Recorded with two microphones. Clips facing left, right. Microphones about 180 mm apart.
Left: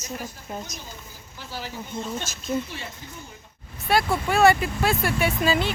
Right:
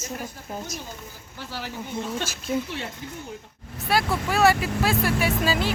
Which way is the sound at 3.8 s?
Centre (ahead or behind).